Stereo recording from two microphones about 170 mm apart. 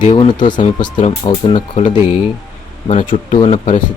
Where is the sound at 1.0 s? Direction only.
35° left (ahead or behind).